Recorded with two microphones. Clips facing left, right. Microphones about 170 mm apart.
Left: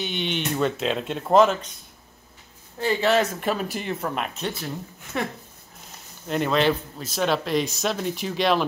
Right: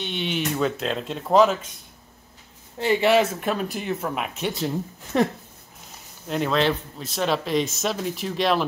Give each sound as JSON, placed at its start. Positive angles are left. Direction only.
{"t": 0.0, "sound": "speech", "side_deg": 0}
{"t": 2.8, "sound": "speech", "side_deg": -15}
{"t": 5.1, "sound": "speech", "side_deg": -30}
{"t": 6.2, "sound": "speech", "side_deg": 0}